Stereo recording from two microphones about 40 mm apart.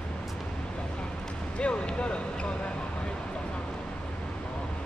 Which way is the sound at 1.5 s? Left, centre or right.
Left.